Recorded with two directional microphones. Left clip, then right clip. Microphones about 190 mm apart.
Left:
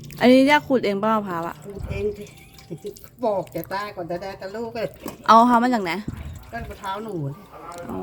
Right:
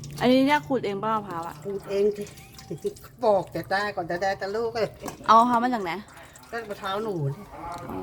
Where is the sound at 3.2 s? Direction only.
25° right (ahead or behind).